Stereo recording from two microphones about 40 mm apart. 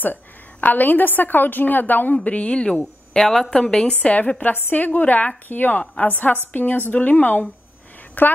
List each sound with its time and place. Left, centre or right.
0.0 s a woman's voice: left
2.2 s a woman's voice: left
2.8 s a woman's voice: centre
4.0 s a woman's voice: left
4.6 s a woman's voice: left
8.2 s a woman's voice: left